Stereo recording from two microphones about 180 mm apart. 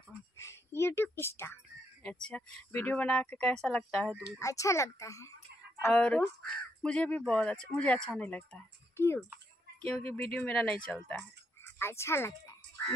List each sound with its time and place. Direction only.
0.4 s a woman's voice: 15° left (ahead or behind)
4.4 s speech: 15° left (ahead or behind)
5.9 s speech: 5° left (ahead or behind)